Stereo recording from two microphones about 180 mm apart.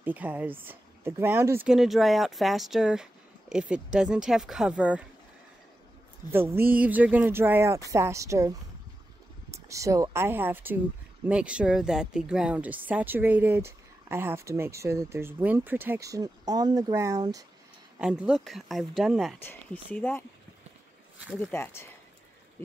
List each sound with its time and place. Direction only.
0.0 s speech: 10° right (ahead or behind)
1.7 s speech: centre (ahead or behind)
6.3 s speech: 10° right (ahead or behind)
17.9 s speech: 5° right (ahead or behind)
19.4 s speech: 10° left (ahead or behind)
21.5 s speech: 15° left (ahead or behind)